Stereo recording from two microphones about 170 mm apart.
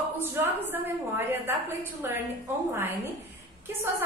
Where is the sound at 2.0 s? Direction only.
15° right (ahead or behind).